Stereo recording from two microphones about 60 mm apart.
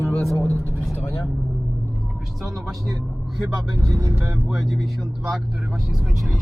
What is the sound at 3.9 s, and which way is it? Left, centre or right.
Speech, right.